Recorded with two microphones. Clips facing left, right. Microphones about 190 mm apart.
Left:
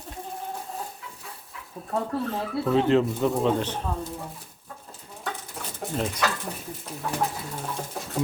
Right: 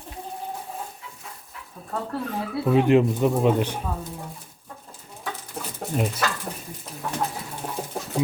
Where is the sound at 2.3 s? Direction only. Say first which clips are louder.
Right 3 dB; 15° right (ahead or behind).